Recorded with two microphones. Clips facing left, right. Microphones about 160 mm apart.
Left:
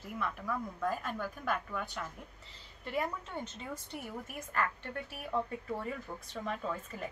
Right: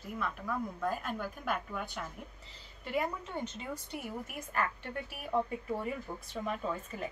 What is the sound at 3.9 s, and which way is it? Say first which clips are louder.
Speech: right 3 dB; 10° right (ahead or behind).